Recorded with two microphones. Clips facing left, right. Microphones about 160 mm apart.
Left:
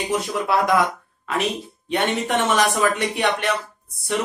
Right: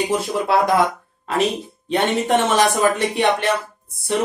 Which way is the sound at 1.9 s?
30° right (ahead or behind).